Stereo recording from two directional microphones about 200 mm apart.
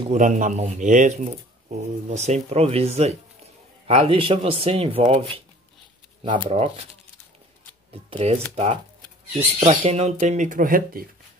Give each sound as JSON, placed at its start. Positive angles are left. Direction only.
{"t": 0.1, "sound": "speech", "side_deg": -40}
{"t": 6.2, "sound": "speech", "side_deg": -25}
{"t": 8.1, "sound": "speech", "side_deg": -30}
{"t": 9.6, "sound": "speech", "side_deg": -30}